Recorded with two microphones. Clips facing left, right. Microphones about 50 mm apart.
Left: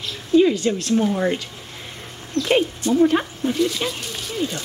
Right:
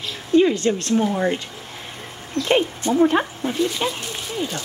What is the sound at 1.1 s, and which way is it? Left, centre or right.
Speech, centre.